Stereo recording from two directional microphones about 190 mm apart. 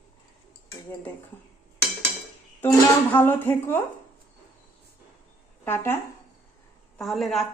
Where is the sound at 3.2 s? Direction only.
10° left (ahead or behind).